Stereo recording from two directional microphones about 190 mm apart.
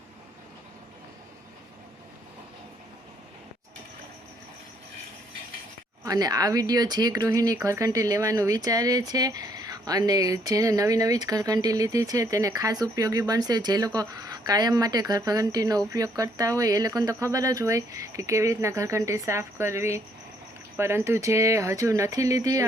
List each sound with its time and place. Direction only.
6.1 s speech: 20° right (ahead or behind)